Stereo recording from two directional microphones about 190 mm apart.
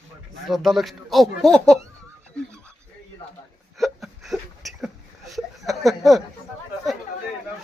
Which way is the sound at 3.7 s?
Centre (ahead or behind).